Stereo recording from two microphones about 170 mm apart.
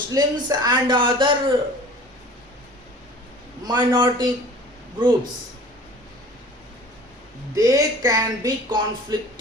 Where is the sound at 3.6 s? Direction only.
25° right (ahead or behind).